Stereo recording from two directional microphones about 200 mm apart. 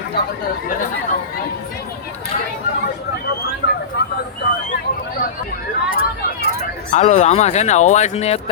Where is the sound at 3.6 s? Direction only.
65° left (ahead or behind).